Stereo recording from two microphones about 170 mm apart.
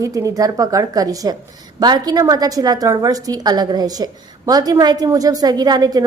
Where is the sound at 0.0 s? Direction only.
20° right (ahead or behind).